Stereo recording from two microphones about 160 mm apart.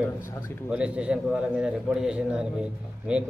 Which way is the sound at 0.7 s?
5° right (ahead or behind).